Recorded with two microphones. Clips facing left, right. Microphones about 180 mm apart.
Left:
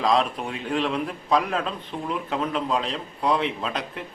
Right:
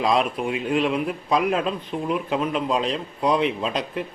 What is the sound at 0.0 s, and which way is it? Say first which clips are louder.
A man's voice: right 1 dB; 15° right (ahead or behind).